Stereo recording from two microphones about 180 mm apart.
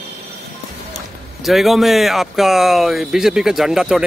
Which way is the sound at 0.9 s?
Centre (ahead or behind).